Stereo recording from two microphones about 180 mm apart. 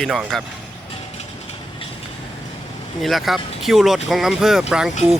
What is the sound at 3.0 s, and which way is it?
Speech, centre (ahead or behind).